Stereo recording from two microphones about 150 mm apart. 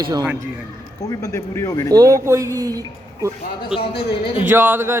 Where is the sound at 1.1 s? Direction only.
20° left (ahead or behind).